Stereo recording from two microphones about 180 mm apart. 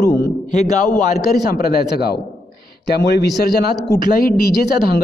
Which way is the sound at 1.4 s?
55° left (ahead or behind).